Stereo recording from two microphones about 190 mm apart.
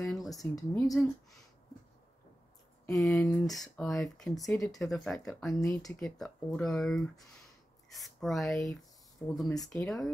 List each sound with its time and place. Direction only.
0.0 s a sound: centre (ahead or behind)
0.6 s speech: 20° left (ahead or behind)
2.9 s speech: centre (ahead or behind)
5.6 s speech: 20° left (ahead or behind)
5.9 s speech: centre (ahead or behind)